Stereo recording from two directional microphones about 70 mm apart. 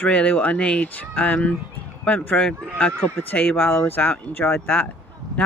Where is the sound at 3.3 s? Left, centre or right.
Left.